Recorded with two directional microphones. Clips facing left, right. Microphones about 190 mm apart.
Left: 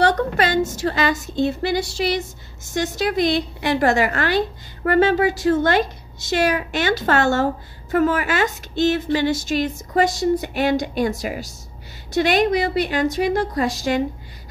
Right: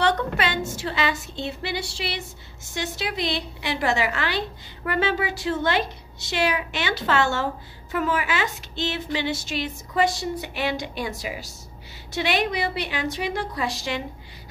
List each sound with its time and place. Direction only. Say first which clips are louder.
0.0 s a woman's voice: left 5 dB; 40° left (ahead or behind)